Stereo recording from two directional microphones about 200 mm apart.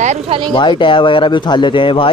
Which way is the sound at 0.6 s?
25° left (ahead or behind).